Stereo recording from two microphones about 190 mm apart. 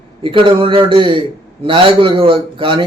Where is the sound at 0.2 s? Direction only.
25° right (ahead or behind).